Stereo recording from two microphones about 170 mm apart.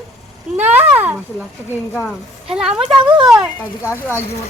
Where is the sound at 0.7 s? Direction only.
10° right (ahead or behind).